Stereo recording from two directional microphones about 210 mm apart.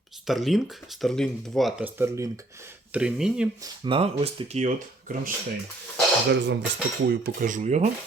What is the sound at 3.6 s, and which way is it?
Speech, 25° right (ahead or behind).